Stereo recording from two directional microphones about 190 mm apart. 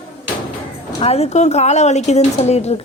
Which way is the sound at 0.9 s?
35° left (ahead or behind).